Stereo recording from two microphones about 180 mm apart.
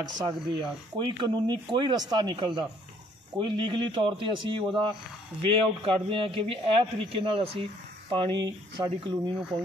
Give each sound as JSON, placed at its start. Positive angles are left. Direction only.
{"t": 0.2, "sound": "a man's voice", "side_deg": -25}